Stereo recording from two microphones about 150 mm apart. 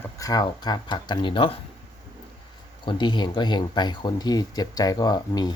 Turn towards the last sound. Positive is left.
turn(degrees=25)  # may be behind; listen again after turning